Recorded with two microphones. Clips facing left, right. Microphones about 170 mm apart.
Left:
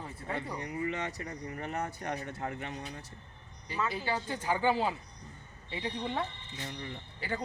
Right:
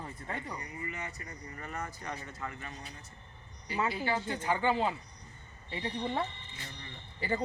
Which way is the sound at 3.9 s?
15° left (ahead or behind).